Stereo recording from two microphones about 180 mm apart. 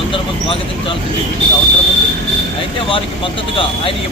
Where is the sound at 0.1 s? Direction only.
30° left (ahead or behind).